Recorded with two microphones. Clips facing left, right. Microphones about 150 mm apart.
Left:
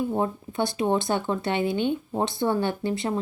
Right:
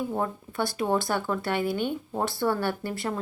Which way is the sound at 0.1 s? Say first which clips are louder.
Left 3 dB; 20° left (ahead or behind).